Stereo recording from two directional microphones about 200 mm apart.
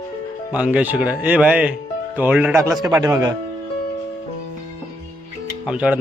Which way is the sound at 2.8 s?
15° right (ahead or behind).